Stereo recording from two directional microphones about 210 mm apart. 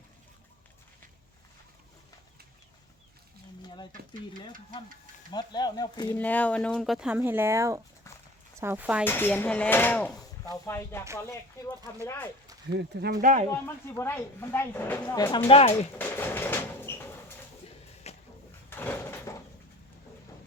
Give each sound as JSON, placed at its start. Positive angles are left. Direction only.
{"t": 5.3, "sound": "speech", "side_deg": 20}
{"t": 6.1, "sound": "speech", "side_deg": 5}
{"t": 9.0, "sound": "speech", "side_deg": 10}
{"t": 12.7, "sound": "speech", "side_deg": -50}
{"t": 13.2, "sound": "speech", "side_deg": -40}
{"t": 13.5, "sound": "speech", "side_deg": 10}
{"t": 15.4, "sound": "speech", "side_deg": 30}
{"t": 16.0, "sound": "a sound", "side_deg": 10}
{"t": 18.0, "sound": "a sound", "side_deg": 30}
{"t": 18.7, "sound": "door", "side_deg": 10}